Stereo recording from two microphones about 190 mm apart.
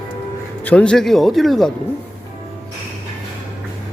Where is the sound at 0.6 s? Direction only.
5° left (ahead or behind).